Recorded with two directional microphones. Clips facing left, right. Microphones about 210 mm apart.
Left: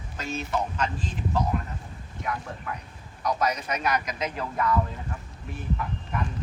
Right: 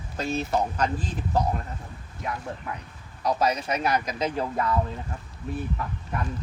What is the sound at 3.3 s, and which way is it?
Speech, 30° right (ahead or behind).